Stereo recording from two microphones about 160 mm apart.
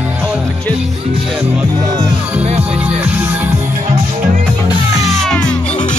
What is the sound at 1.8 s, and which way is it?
Speech, 25° right (ahead or behind).